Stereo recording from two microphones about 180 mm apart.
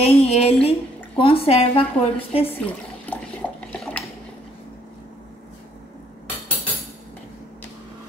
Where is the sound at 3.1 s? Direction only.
10° left (ahead or behind).